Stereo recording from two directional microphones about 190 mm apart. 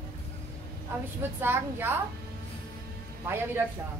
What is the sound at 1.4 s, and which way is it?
Speech, 10° right (ahead or behind).